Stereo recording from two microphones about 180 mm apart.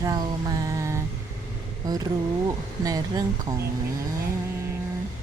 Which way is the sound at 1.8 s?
20° right (ahead or behind).